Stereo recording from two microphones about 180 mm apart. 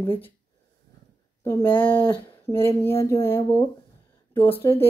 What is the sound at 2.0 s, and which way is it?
Speech, 25° left (ahead or behind).